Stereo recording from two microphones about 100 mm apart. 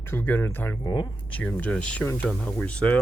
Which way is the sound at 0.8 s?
45° left (ahead or behind).